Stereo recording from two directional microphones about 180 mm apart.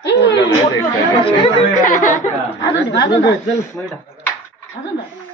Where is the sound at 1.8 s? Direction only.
45° left (ahead or behind).